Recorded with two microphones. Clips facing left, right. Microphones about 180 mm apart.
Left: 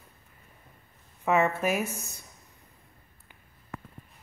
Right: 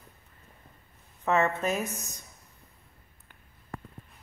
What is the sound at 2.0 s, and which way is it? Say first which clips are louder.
Speech: left 1 dB; 15° right (ahead or behind).